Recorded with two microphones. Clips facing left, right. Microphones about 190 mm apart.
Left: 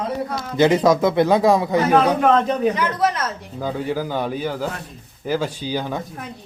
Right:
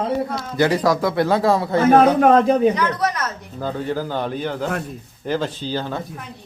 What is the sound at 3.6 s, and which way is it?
A man's voice, 10° left (ahead or behind).